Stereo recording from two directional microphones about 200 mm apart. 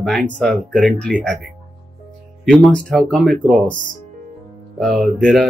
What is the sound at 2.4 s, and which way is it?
Speech, 5° left (ahead or behind).